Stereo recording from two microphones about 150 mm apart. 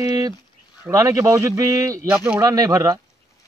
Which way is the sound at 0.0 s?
25° right (ahead or behind).